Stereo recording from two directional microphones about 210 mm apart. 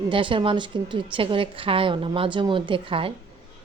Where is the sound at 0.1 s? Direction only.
25° right (ahead or behind).